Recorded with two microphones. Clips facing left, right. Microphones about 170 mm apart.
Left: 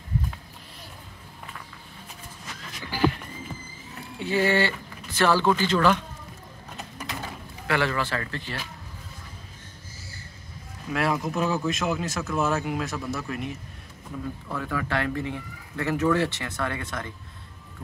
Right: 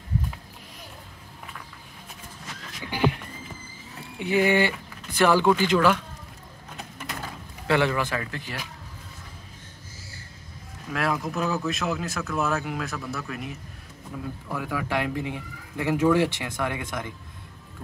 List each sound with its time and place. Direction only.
2.8 s a sound: 20° right (ahead or behind)
4.2 s speech: 15° right (ahead or behind)
7.6 s speech: 20° right (ahead or behind)
10.9 s speech: 5° left (ahead or behind); by 17.1 s 15° right (ahead or behind)